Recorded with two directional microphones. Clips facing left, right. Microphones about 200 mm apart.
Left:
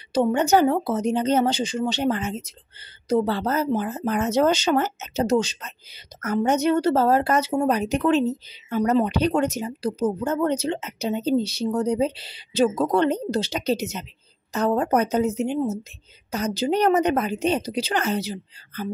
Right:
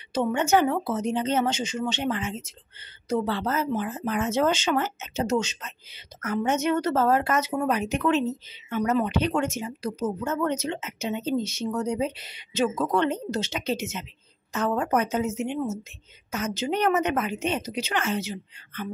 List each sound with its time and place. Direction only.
0.1 s speech: 35° left (ahead or behind)